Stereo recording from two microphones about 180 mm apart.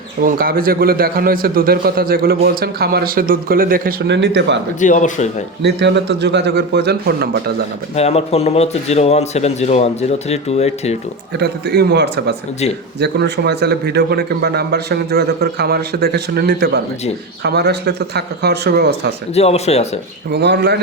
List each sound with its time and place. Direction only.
0.2 s a man's voice: 55° right (ahead or behind); by 4.6 s 75° right (ahead or behind)
4.8 s speech: 45° left (ahead or behind)
5.6 s a man's voice: 70° right (ahead or behind)
7.9 s speech: 35° left (ahead or behind)
11.3 s a man's voice: 65° right (ahead or behind)
19.3 s speech: 35° left (ahead or behind)
20.3 s a man's voice: 70° right (ahead or behind)